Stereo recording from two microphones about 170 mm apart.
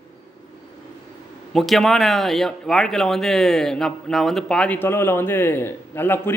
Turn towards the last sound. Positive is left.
turn(degrees=15)  # may be behind; listen again after turning